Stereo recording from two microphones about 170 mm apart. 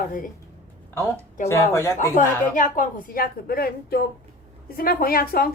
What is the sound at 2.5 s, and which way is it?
A woman's voice, 50° left (ahead or behind).